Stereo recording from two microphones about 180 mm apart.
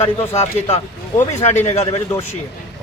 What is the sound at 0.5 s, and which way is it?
Speech, 35° left (ahead or behind).